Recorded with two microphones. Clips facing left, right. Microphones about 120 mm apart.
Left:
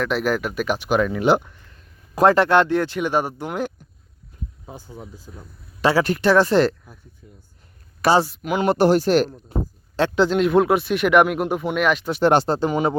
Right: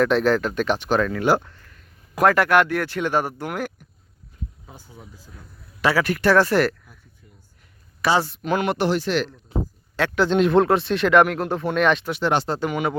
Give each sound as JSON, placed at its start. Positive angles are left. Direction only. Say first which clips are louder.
{"t": 0.0, "sound": "speech", "louder": "right 3 dB", "side_deg": 5}
{"t": 1.7, "sound": "speech", "louder": "left 2 dB", "side_deg": 30}
{"t": 4.6, "sound": "speech", "louder": "left 7 dB", "side_deg": 30}
{"t": 8.3, "sound": "speech", "louder": "right 1 dB", "side_deg": 5}
{"t": 8.6, "sound": "speech", "louder": "left 9 dB", "side_deg": 35}
{"t": 10.2, "sound": "speech", "louder": "right 2 dB", "side_deg": 0}
{"t": 12.1, "sound": "speech", "louder": "left 5 dB", "side_deg": 40}